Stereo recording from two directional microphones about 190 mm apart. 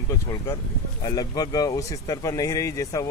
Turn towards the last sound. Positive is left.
turn(degrees=15)  # may be behind; listen again after turning